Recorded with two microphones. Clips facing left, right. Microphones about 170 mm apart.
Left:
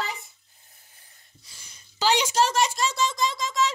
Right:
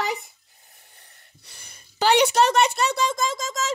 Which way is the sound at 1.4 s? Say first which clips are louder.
Right 5 dB; 60° right (ahead or behind).